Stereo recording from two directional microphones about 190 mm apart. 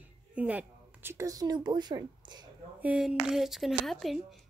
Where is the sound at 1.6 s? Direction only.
20° right (ahead or behind).